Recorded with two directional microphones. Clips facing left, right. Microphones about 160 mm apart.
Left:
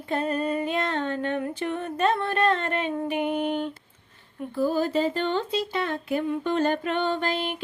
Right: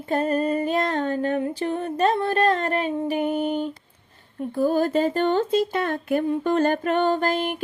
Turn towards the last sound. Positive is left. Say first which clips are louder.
# right 4 dB
turn(degrees=-45)  # may be behind; listen again after turning